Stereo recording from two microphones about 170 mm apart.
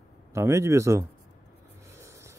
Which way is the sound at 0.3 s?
15° right (ahead or behind).